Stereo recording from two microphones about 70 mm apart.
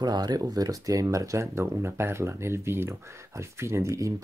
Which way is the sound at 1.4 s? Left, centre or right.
Right.